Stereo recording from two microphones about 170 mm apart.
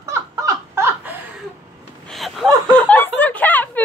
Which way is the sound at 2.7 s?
10° left (ahead or behind).